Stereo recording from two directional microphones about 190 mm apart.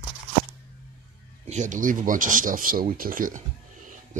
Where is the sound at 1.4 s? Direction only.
40° right (ahead or behind).